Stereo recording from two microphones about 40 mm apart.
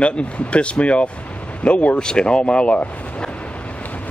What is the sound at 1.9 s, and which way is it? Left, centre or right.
Speech, left.